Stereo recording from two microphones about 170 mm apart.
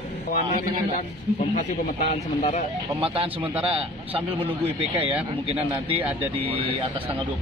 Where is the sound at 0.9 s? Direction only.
50° left (ahead or behind).